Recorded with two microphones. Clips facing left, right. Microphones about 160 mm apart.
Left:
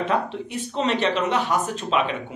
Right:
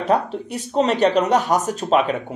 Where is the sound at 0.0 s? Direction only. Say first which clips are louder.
Right 4 dB; 40° right (ahead or behind).